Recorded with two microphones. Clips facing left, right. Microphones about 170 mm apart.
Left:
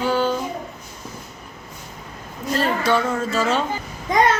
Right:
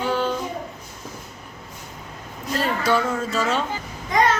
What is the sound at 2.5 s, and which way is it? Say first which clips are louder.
Speech: left 2 dB; centre (ahead or behind).